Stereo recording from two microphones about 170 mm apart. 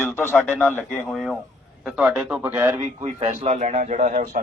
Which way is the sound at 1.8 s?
5° right (ahead or behind).